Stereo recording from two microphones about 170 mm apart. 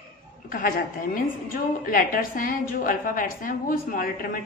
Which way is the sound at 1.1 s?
55° left (ahead or behind).